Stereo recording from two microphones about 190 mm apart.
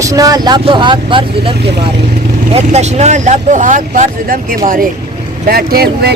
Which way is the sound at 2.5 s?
35° right (ahead or behind).